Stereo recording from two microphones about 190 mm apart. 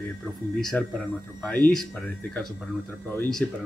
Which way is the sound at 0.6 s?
5° left (ahead or behind).